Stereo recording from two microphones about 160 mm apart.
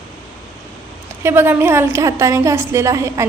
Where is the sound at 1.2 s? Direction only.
15° right (ahead or behind).